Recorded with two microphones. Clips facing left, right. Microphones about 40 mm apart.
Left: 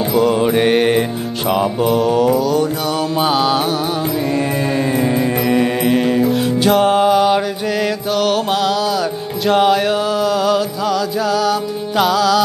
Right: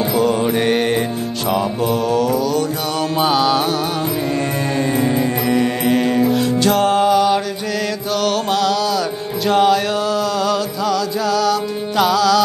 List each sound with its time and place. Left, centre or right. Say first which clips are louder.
0.1 s mantra: left 4 dB; centre
0.4 s mantra: left 3 dB; centre
4.7 s mantra: even; centre
8.2 s music: left 1 dB; centre
9.5 s mantra: left 1 dB; centre
12.0 s music: even; centre